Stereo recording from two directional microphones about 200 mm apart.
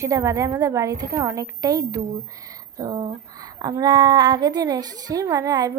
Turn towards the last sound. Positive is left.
turn(degrees=-20)  # may be behind; listen again after turning